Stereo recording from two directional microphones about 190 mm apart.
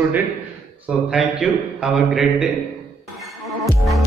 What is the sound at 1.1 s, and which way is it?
A man's voice, 5° right (ahead or behind).